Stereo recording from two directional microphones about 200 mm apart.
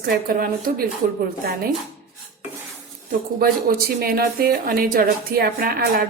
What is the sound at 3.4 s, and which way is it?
Speech, 50° right (ahead or behind).